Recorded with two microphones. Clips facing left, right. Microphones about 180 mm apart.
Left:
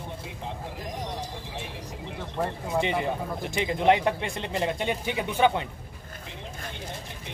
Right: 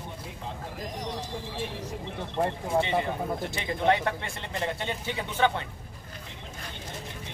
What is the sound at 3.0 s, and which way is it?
Speech, 15° left (ahead or behind).